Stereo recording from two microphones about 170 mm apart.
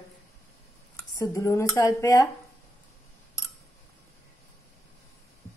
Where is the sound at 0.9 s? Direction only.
15° left (ahead or behind).